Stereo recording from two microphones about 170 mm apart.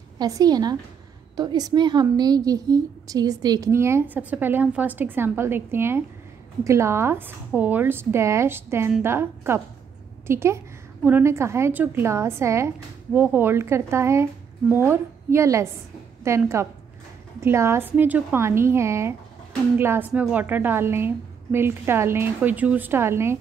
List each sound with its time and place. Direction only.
0.2 s a woman's voice: 20° right (ahead or behind)